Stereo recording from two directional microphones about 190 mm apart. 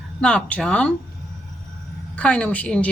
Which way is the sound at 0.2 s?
5° left (ahead or behind).